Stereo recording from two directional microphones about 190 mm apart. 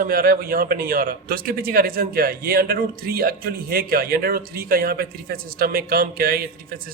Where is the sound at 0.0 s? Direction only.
50° right (ahead or behind).